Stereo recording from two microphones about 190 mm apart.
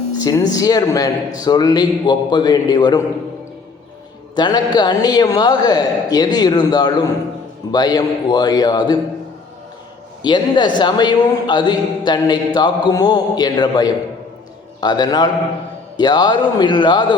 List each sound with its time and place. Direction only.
0.2 s a man's voice: 20° left (ahead or behind)
4.4 s a man's voice: 25° left (ahead or behind)
10.2 s a man's voice: 25° left (ahead or behind)